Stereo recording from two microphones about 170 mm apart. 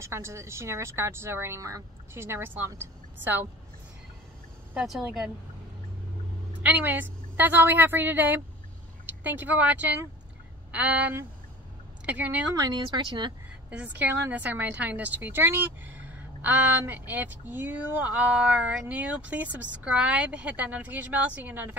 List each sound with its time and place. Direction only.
0.0 s a woman's voice: 15° right (ahead or behind)
4.7 s speech: 5° right (ahead or behind)
6.6 s a woman's voice: 10° right (ahead or behind)
12.5 s speech: 25° right (ahead or behind)
13.7 s a woman's voice: 10° right (ahead or behind)